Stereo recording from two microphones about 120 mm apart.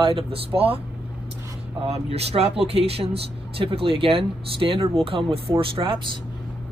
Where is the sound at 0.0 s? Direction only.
45° right (ahead or behind).